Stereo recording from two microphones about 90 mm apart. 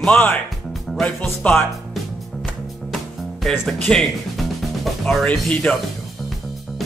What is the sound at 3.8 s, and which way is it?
Music, 10° left (ahead or behind).